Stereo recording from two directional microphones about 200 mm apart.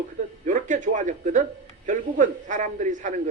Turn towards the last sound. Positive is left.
turn(degrees=-40)  # may be behind; listen again after turning